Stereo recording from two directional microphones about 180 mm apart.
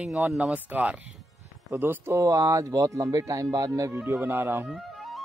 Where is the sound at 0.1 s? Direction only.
5° right (ahead or behind).